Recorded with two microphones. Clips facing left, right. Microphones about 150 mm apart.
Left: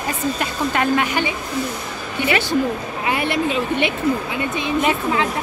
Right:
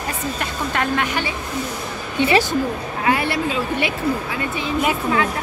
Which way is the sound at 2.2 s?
20° right (ahead or behind).